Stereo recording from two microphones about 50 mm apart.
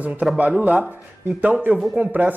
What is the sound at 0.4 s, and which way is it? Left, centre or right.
Speech, right.